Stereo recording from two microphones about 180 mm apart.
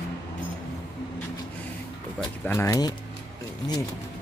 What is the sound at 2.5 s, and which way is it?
Speech, 15° left (ahead or behind).